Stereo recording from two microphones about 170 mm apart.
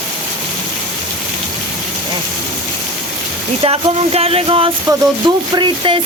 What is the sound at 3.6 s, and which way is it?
Speech, 35° right (ahead or behind).